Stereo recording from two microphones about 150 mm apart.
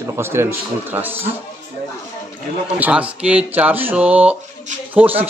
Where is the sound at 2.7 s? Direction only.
10° right (ahead or behind).